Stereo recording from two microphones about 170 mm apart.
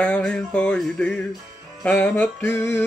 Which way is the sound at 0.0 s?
5° left (ahead or behind).